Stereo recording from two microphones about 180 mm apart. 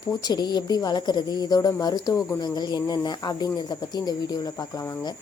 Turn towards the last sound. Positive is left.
turn(degrees=20)  # may be behind; listen again after turning